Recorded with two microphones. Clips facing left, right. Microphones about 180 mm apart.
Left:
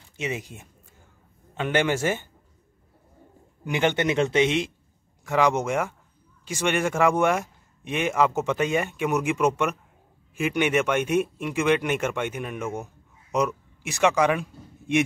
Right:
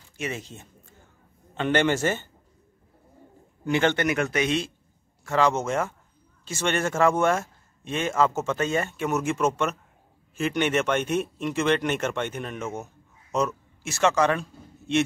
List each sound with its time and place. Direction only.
0.2 s speech: 15° left (ahead or behind)
3.6 s a man's voice: 15° left (ahead or behind)